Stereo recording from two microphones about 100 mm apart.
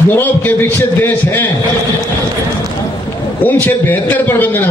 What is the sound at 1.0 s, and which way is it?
Speech, 20° left (ahead or behind).